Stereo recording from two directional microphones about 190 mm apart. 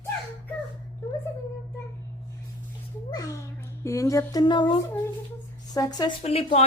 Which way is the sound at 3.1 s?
20° left (ahead or behind).